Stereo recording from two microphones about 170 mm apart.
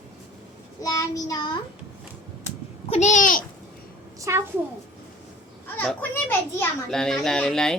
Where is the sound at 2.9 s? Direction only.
45° left (ahead or behind).